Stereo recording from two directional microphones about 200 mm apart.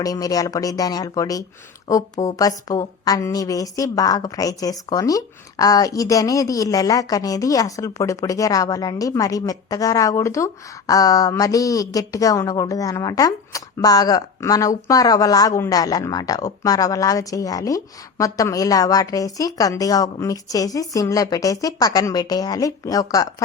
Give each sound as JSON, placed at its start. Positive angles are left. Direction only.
{"t": 0.0, "sound": "a woman's voice", "side_deg": 20}